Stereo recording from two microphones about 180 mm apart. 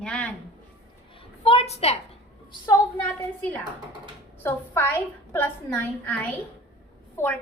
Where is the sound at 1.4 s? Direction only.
35° left (ahead or behind).